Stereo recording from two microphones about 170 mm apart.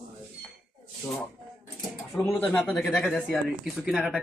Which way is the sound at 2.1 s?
10° left (ahead or behind).